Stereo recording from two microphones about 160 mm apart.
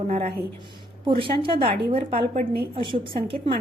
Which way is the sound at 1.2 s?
35° right (ahead or behind).